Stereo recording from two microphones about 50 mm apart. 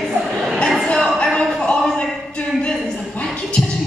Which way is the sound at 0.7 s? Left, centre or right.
Centre.